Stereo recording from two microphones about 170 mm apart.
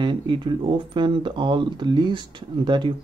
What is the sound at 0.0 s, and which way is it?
Speech, 30° right (ahead or behind).